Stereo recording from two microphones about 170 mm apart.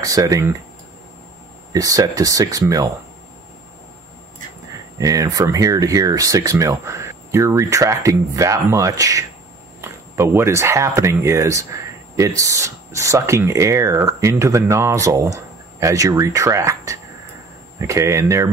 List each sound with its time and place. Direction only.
0.0 s speech: 20° right (ahead or behind)
1.7 s speech: 20° right (ahead or behind)
4.9 s speech: 20° right (ahead or behind)